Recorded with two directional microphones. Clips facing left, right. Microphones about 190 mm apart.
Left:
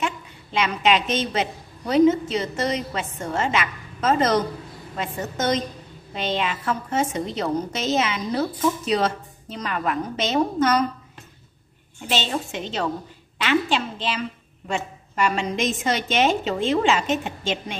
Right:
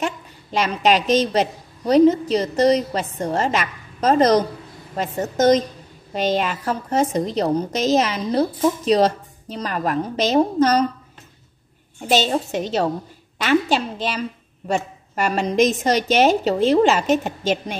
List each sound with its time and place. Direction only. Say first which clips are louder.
0.0 s a woman's voice: right 2 dB; 40° right (ahead or behind)
12.0 s a woman's voice: right 6 dB; 40° right (ahead or behind)